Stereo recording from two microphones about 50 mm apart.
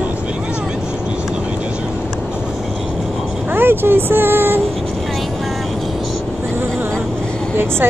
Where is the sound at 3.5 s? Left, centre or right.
Right.